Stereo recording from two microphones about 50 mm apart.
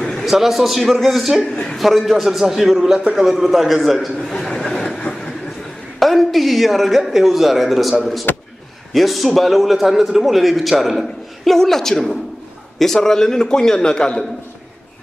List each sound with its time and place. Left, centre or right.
0.2 s a man's voice: centre
1.5 s speech: centre
1.8 s a man's voice: centre
4.3 s chuckle: centre
4.6 s vehicle: centre
5.9 s a man's voice: centre